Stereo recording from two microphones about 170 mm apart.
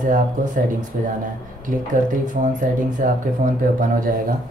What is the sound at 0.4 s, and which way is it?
Speech, 50° right (ahead or behind).